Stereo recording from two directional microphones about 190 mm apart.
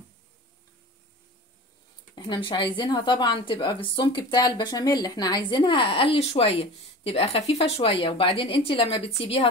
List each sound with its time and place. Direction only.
2.1 s a woman's voice: 25° left (ahead or behind)